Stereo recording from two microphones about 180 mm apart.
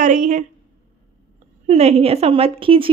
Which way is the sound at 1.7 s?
35° right (ahead or behind).